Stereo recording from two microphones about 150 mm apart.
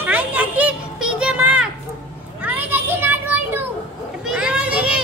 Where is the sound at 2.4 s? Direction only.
10° right (ahead or behind).